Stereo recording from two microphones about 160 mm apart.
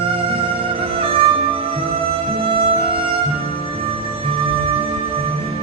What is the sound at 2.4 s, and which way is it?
Music, 35° right (ahead or behind).